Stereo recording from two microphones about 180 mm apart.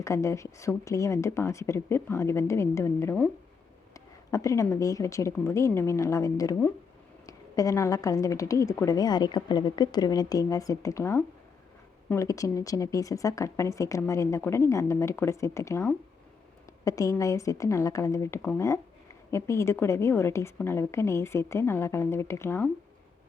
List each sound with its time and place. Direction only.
0.0 s a woman's voice: 15° left (ahead or behind)